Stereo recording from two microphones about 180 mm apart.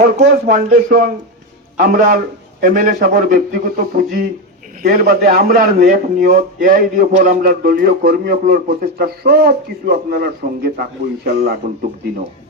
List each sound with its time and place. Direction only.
0.0 s a man's voice: 50° right (ahead or behind)